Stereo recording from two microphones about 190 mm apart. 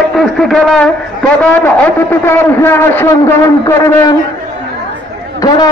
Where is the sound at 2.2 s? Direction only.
10° left (ahead or behind).